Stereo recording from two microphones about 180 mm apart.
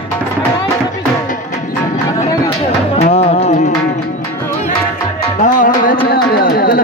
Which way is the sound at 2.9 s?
35° left (ahead or behind).